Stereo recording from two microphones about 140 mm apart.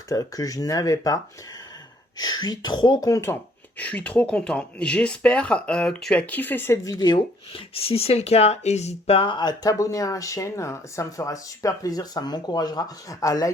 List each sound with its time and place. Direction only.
0.1 s speech: 25° left (ahead or behind)
3.8 s speech: 10° left (ahead or behind)